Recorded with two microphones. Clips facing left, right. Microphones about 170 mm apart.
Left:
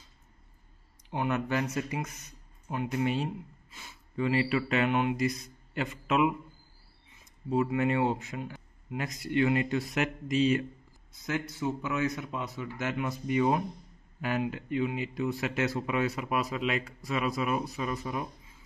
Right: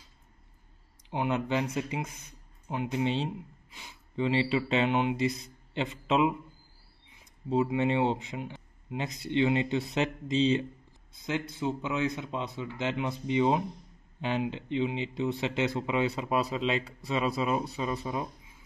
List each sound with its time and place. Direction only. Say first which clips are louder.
1.1 s speech: right 1 dB; 15° right (ahead or behind)
7.4 s speech: right 1 dB; 20° right (ahead or behind)